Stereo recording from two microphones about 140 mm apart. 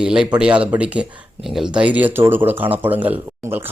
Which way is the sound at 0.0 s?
5° right (ahead or behind).